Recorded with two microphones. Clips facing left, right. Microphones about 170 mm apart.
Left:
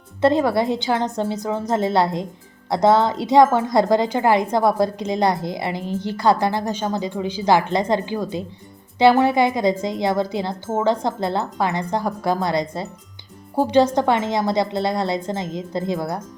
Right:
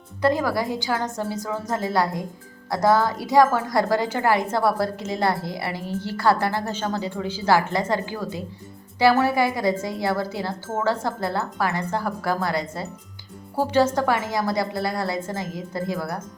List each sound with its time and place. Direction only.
0.2 s a woman's voice: 25° left (ahead or behind)